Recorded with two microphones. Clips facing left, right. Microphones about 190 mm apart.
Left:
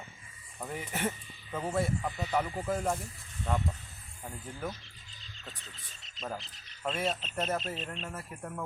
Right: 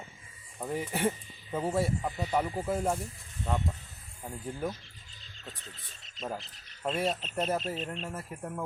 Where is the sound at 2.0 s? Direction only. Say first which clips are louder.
Right 1 dB; 25° right (ahead or behind).